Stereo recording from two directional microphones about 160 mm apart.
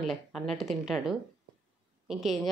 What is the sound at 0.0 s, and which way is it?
A woman's voice, centre (ahead or behind).